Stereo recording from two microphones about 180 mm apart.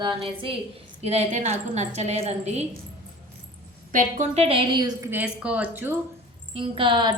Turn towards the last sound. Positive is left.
turn(degrees=-25)  # may be behind; listen again after turning